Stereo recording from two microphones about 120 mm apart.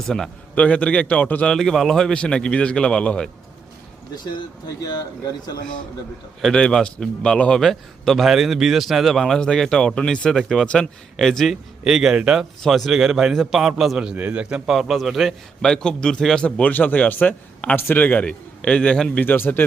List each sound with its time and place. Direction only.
0.0 s a man's voice: 5° left (ahead or behind)
4.8 s speech: 35° left (ahead or behind)
6.4 s a man's voice: 5° left (ahead or behind)